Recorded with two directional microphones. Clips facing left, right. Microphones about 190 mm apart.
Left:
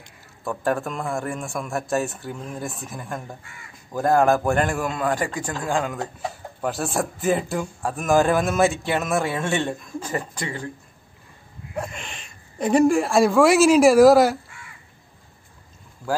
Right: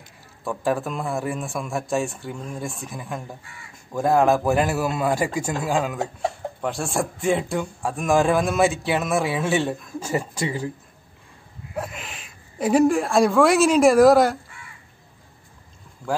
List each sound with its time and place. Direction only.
0.4 s a man's voice: centre (ahead or behind)
11.7 s speech: 5° right (ahead or behind)